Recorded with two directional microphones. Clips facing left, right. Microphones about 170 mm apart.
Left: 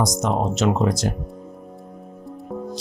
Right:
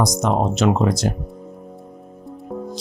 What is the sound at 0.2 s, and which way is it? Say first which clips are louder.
Speech: right 2 dB; 65° right (ahead or behind).